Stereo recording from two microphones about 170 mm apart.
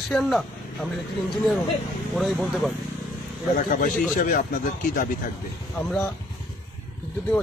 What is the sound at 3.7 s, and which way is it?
A man's voice, 55° left (ahead or behind).